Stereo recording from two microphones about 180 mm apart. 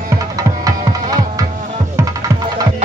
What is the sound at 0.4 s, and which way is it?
Music, 20° right (ahead or behind).